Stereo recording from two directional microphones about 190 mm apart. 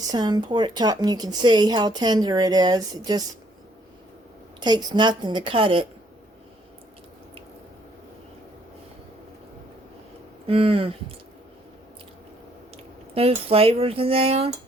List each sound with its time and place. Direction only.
0.1 s a woman's voice: 20° right (ahead or behind)
4.6 s a woman's voice: 20° right (ahead or behind)
10.4 s a woman's voice: 30° right (ahead or behind)
12.7 s speech: 30° right (ahead or behind)